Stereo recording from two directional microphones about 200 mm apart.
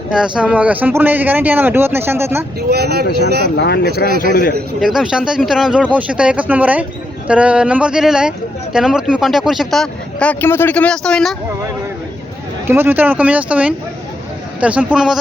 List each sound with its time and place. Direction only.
0.1 s speech: 5° right (ahead or behind)
2.6 s speech: 55° right (ahead or behind)
3.5 s speech: 55° left (ahead or behind)
4.8 s speech: centre (ahead or behind)
12.6 s a man's voice: 10° right (ahead or behind)